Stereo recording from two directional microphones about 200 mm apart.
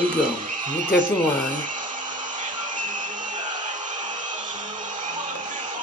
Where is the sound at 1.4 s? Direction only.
40° right (ahead or behind).